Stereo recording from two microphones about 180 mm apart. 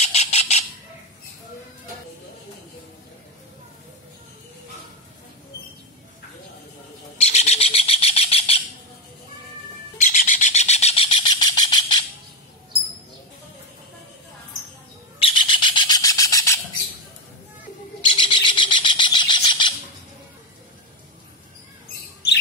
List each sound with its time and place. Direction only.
0.0 s bird: 35° left (ahead or behind)
7.2 s bird: 35° left (ahead or behind)
9.9 s bird: 45° left (ahead or behind); by 12.0 s 25° left (ahead or behind)
15.1 s bird: 30° left (ahead or behind)
18.1 s bird: 25° left (ahead or behind)